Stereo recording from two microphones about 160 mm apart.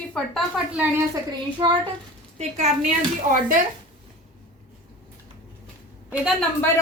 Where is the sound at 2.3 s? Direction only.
45° right (ahead or behind).